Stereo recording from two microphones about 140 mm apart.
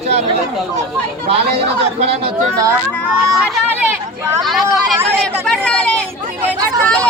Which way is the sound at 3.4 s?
15° right (ahead or behind).